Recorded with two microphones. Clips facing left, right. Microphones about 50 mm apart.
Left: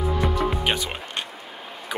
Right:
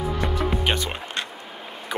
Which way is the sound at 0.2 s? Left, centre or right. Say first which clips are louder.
Left 1 dB; centre.